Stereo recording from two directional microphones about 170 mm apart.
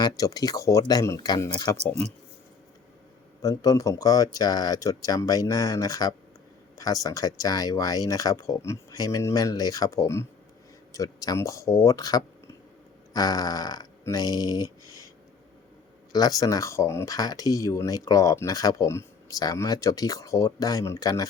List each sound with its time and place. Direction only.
0.2 s speech: 20° left (ahead or behind)
3.4 s speech: 20° left (ahead or behind)
16.1 s speech: 20° left (ahead or behind)